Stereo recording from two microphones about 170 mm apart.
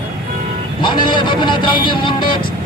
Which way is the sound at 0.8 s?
25° left (ahead or behind).